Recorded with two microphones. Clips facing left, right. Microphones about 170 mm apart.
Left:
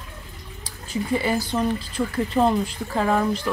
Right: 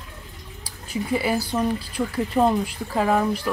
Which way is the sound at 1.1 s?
10° right (ahead or behind).